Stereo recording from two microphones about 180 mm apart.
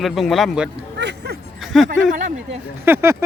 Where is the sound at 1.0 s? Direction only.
70° right (ahead or behind).